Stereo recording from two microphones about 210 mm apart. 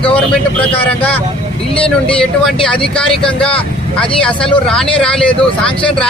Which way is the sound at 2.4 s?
5° left (ahead or behind).